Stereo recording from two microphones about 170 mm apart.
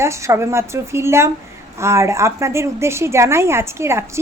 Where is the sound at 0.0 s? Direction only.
15° right (ahead or behind).